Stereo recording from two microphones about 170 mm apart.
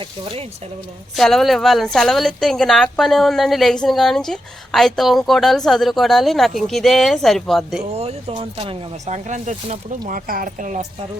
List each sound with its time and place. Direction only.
0.0 s speech: 35° right (ahead or behind)
1.1 s a woman's voice: centre (ahead or behind)
7.9 s speech: 35° right (ahead or behind)
10.1 s speech: 55° right (ahead or behind)